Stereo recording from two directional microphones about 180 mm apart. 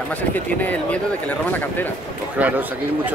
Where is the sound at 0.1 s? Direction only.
10° left (ahead or behind).